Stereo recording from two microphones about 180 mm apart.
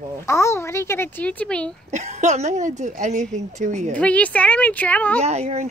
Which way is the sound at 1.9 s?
40° right (ahead or behind).